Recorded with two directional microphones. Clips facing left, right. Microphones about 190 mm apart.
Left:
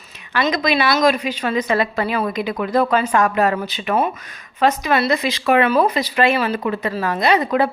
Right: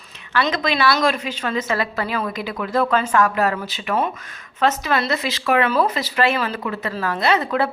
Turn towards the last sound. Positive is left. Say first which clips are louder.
# left 3 dB
turn(degrees=15)  # may be behind; listen again after turning